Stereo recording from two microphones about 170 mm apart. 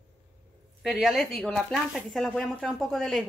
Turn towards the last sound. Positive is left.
turn(degrees=0)  # may be behind; listen again after turning